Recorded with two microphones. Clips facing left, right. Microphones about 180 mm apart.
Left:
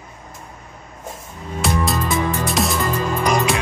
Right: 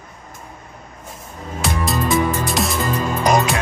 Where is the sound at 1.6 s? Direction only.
Centre (ahead or behind).